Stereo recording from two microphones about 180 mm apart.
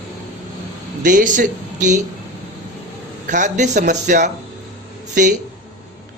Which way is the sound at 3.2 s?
45° right (ahead or behind).